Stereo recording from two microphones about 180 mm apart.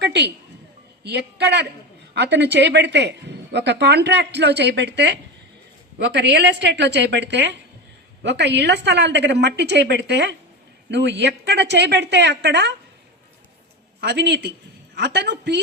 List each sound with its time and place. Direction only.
0.0 s a sound: 70° right (ahead or behind)
1.0 s a woman's voice: 70° right (ahead or behind)
14.0 s a woman's voice: 65° right (ahead or behind)